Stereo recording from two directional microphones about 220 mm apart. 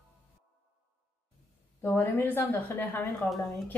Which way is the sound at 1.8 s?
10° left (ahead or behind).